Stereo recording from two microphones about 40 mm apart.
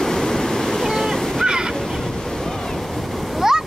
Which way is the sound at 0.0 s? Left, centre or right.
Centre.